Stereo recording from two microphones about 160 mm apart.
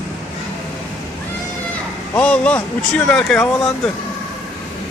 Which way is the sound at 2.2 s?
10° left (ahead or behind).